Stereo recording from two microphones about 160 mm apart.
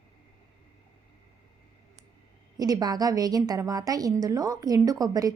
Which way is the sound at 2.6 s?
25° right (ahead or behind).